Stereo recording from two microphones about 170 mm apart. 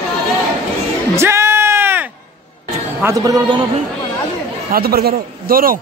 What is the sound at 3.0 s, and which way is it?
Speech, 20° right (ahead or behind).